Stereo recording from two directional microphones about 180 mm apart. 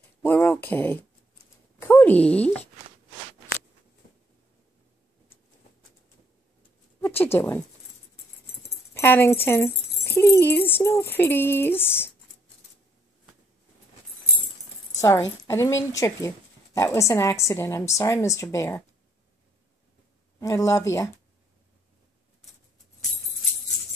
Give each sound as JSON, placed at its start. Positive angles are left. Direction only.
{"t": 0.2, "sound": "speech", "side_deg": 10}
{"t": 7.0, "sound": "a woman's voice", "side_deg": 10}
{"t": 8.9, "sound": "speech", "side_deg": 15}
{"t": 15.0, "sound": "speech", "side_deg": 15}
{"t": 20.3, "sound": "speech", "side_deg": 20}